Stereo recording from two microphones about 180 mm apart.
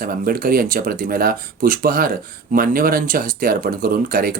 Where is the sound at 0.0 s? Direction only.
55° right (ahead or behind).